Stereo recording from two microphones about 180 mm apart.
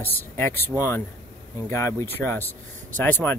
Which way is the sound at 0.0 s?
10° left (ahead or behind).